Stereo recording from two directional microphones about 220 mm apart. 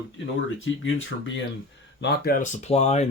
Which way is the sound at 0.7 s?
60° left (ahead or behind).